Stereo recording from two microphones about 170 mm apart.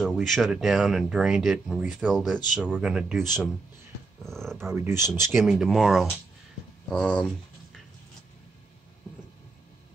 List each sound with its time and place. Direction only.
0.0 s speech: centre (ahead or behind)
4.6 s speech: 15° right (ahead or behind)
5.3 s speech: centre (ahead or behind)